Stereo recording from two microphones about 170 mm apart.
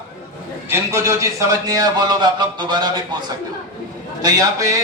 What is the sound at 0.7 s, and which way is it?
A man's voice, 15° right (ahead or behind).